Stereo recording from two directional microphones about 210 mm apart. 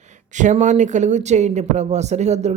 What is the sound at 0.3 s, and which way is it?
Speech, 35° right (ahead or behind).